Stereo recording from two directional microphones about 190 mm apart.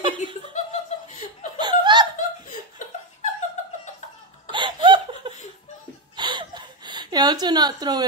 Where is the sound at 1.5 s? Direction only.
25° right (ahead or behind).